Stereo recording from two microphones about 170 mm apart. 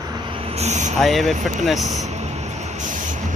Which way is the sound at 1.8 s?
40° right (ahead or behind).